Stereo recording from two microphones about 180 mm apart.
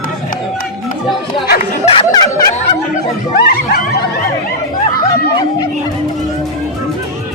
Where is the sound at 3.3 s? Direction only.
60° left (ahead or behind).